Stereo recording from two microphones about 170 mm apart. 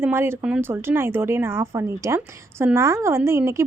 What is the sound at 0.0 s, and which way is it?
A woman's voice, 15° right (ahead or behind).